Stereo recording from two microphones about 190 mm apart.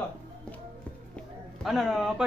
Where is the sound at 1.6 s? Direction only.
Centre (ahead or behind).